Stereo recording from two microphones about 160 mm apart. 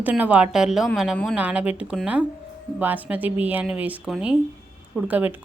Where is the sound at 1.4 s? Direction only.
10° right (ahead or behind).